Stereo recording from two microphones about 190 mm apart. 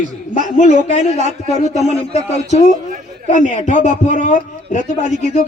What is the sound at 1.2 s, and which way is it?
Speech, 35° right (ahead or behind).